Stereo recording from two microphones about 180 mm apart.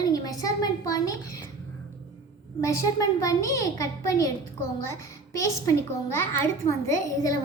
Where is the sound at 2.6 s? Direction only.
15° left (ahead or behind).